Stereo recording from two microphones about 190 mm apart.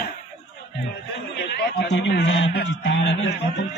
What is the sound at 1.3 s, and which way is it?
A man's voice, 60° left (ahead or behind).